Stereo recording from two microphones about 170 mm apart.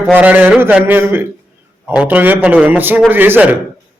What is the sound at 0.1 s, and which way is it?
A man's voice, 10° right (ahead or behind).